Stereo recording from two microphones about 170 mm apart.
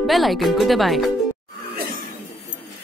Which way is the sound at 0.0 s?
Centre (ahead or behind).